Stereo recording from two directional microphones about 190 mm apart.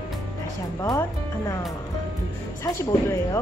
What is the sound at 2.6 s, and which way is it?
Speech, 15° left (ahead or behind).